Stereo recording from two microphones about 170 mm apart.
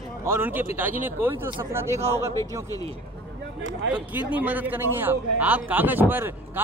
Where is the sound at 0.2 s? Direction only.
15° right (ahead or behind).